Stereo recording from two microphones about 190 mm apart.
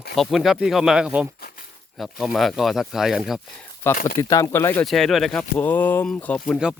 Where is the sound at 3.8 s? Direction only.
10° left (ahead or behind).